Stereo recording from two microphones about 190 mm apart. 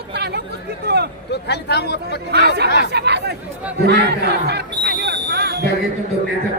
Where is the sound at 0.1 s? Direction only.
60° right (ahead or behind).